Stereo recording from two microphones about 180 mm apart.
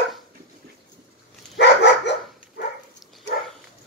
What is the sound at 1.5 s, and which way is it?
Dog, 75° left (ahead or behind).